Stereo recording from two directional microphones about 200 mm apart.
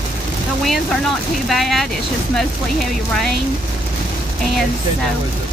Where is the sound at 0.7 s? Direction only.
Centre (ahead or behind).